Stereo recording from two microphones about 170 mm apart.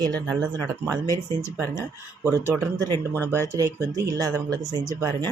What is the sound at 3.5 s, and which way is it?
Speech, 20° right (ahead or behind).